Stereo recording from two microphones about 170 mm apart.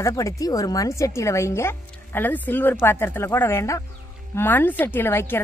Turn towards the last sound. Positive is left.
turn(degrees=15)  # may be behind; listen again after turning